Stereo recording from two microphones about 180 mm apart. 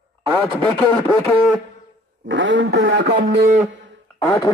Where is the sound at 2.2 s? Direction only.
90° right.